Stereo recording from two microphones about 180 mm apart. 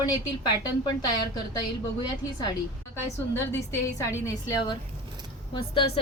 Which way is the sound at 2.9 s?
15° left (ahead or behind).